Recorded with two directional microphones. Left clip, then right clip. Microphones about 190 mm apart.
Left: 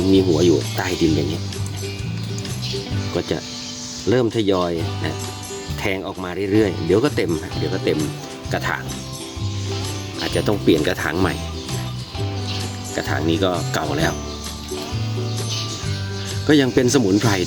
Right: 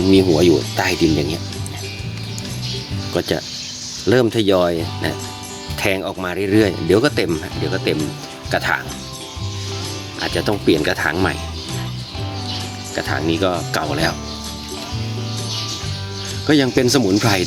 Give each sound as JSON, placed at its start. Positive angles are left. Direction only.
{"t": 0.1, "sound": "speech", "side_deg": -15}
{"t": 3.2, "sound": "speech", "side_deg": -15}
{"t": 7.6, "sound": "speech", "side_deg": 0}
{"t": 10.2, "sound": "speech", "side_deg": 0}
{"t": 13.0, "sound": "speech", "side_deg": 0}
{"t": 16.5, "sound": "speech", "side_deg": 0}
{"t": 17.2, "sound": "speech", "side_deg": -10}